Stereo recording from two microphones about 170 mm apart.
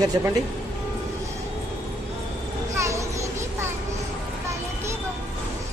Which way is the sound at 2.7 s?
15° right (ahead or behind).